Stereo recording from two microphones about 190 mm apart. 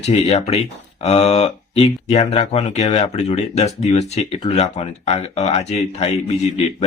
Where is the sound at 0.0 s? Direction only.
35° left (ahead or behind).